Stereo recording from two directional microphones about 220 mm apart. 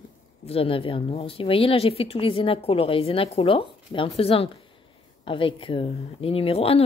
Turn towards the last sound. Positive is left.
turn(degrees=25)  # may be behind; listen again after turning